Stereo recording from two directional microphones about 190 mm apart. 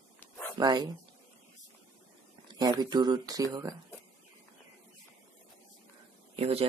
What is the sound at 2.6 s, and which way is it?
Speech, 20° right (ahead or behind).